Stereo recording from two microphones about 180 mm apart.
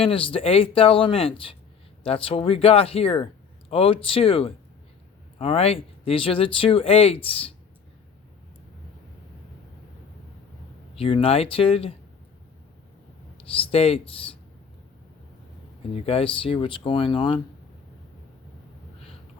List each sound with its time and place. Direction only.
0.0 s speech: 30° left (ahead or behind)
10.9 s speech: 30° left (ahead or behind)
13.3 s speech: 30° left (ahead or behind)
16.0 s speech: 30° left (ahead or behind)